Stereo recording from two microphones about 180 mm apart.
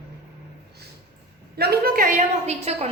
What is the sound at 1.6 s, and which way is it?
A woman's voice, 60° right (ahead or behind).